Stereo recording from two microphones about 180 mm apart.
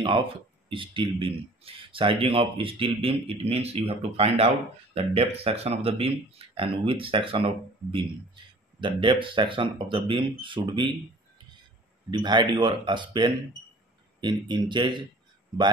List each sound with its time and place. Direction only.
0.7 s speech: 30° right (ahead or behind)
12.1 s speech: 25° right (ahead or behind)